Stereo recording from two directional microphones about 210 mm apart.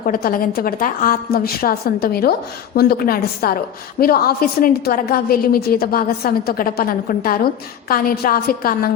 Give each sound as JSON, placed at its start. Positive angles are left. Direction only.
{"t": 0.0, "sound": "a woman's voice", "side_deg": 45}